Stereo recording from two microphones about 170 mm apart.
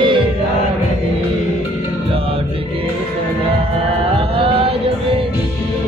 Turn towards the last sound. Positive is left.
turn(degrees=-35)  # may be behind; listen again after turning